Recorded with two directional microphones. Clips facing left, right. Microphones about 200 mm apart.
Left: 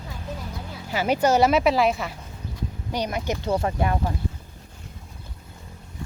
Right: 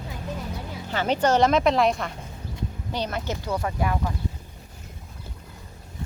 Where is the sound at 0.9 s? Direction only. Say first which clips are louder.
Left 1 dB; 10° left (ahead or behind).